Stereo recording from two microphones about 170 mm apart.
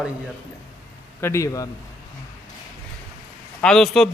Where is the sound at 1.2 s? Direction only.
15° left (ahead or behind).